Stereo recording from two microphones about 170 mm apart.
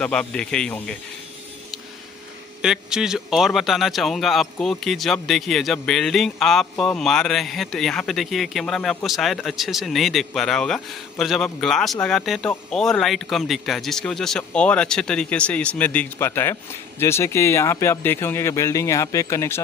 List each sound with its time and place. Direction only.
0.0 s speech: 5° left (ahead or behind)
2.6 s speech: 5° right (ahead or behind); by 19.6 s 15° left (ahead or behind)